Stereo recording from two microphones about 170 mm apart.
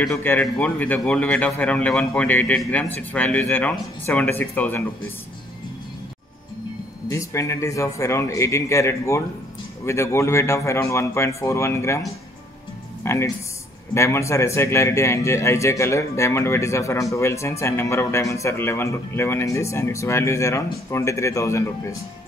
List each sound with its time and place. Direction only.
0.0 s speech: 10° left (ahead or behind)
7.1 s speech: 15° left (ahead or behind)
13.0 s speech: 15° left (ahead or behind)